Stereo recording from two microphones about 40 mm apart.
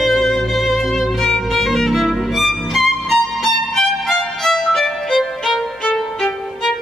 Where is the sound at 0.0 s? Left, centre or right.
Centre.